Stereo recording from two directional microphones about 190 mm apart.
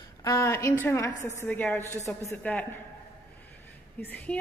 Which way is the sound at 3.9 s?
10° left (ahead or behind).